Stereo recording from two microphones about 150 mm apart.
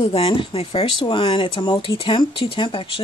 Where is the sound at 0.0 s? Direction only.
40° left (ahead or behind).